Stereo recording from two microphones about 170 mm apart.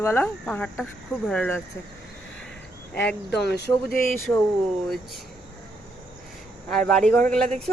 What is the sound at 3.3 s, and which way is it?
Speech, 80° left.